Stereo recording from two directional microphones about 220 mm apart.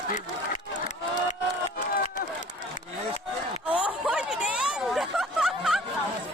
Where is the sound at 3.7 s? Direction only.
5° right (ahead or behind).